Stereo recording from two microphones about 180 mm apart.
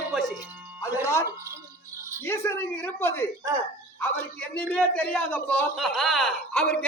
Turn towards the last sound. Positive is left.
turn(degrees=10)  # may be behind; listen again after turning